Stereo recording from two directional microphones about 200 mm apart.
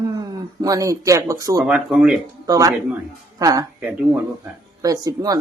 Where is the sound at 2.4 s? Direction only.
15° right (ahead or behind).